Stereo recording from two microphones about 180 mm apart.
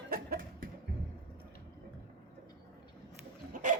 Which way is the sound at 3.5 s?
45° right (ahead or behind).